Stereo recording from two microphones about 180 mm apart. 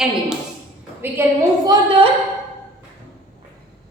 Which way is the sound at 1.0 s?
15° right (ahead or behind).